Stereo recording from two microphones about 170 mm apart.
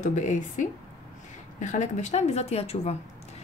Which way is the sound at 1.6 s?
45° left (ahead or behind).